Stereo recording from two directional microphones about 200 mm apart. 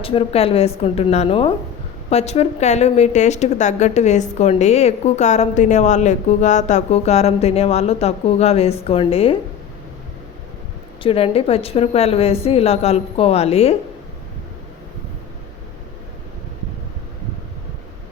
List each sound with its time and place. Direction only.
0.0 s a woman's voice: 25° left (ahead or behind)
11.0 s a woman's voice: 30° left (ahead or behind)